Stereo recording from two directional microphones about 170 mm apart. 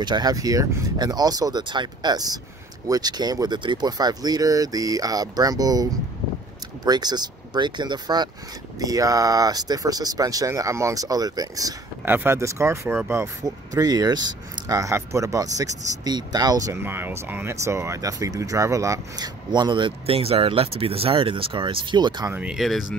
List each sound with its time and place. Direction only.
0.0 s speech: 25° right (ahead or behind)
22.3 s speech: 5° right (ahead or behind)